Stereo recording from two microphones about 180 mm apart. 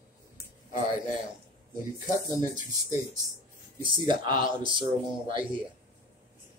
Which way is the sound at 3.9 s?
25° right (ahead or behind).